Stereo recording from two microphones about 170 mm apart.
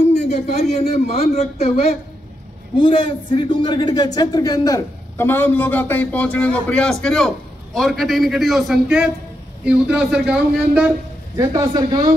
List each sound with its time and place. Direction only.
0.0 s a man's voice: 40° left (ahead or behind); by 10.9 s 5° right (ahead or behind)
11.3 s speech: 20° right (ahead or behind)